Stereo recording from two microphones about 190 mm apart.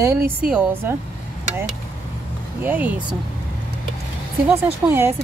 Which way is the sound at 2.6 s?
10° right (ahead or behind).